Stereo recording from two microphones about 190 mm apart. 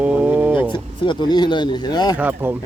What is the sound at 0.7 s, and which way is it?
Speech, 25° left (ahead or behind).